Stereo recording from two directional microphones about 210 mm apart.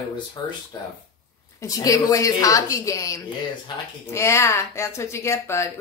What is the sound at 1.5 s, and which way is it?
Speech, 15° left (ahead or behind).